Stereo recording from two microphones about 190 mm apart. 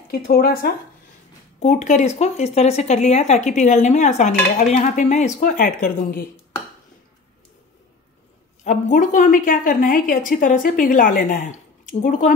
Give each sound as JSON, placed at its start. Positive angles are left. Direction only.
{"t": 0.1, "sound": "a woman's voice", "side_deg": 55}
{"t": 1.6, "sound": "speech", "side_deg": 35}
{"t": 8.6, "sound": "a woman's voice", "side_deg": 40}